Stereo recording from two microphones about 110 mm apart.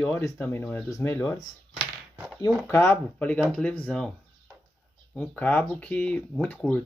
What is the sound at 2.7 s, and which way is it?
Speech, 20° left (ahead or behind).